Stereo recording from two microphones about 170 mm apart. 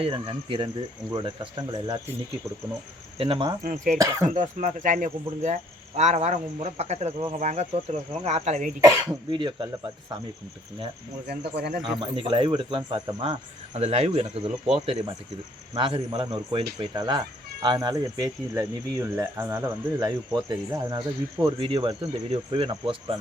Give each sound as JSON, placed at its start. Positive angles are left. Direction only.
{"t": 0.0, "sound": "speech", "side_deg": -30}
{"t": 3.2, "sound": "speech", "side_deg": -30}
{"t": 3.6, "sound": "speech", "side_deg": -50}
{"t": 8.8, "sound": "speech", "side_deg": -25}
{"t": 11.3, "sound": "speech", "side_deg": -65}
{"t": 11.9, "sound": "speech", "side_deg": -30}